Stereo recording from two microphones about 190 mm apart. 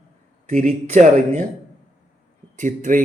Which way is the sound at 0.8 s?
40° right (ahead or behind).